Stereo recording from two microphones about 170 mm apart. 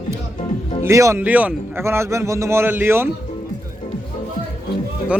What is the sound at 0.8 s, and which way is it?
A man's voice, 20° right (ahead or behind).